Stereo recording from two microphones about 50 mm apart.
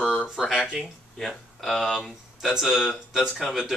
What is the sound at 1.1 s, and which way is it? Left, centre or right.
Speech, centre.